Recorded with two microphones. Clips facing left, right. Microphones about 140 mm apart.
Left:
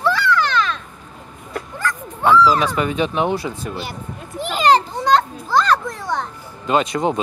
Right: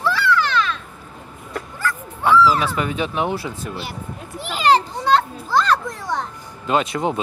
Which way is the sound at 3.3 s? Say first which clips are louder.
Left 3 dB; 10° right (ahead or behind).